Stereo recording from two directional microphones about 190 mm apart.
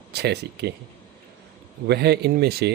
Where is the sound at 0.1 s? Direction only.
60° right (ahead or behind).